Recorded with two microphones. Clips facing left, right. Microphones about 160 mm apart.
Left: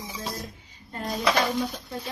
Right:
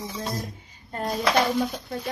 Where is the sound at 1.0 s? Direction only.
Centre (ahead or behind).